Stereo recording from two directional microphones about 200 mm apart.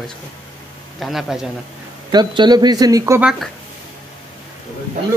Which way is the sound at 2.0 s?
20° right (ahead or behind).